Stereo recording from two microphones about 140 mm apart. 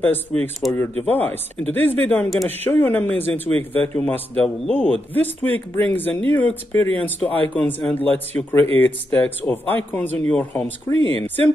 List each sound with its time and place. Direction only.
0.0 s speech: 15° left (ahead or behind)
10.5 s speech: 20° left (ahead or behind)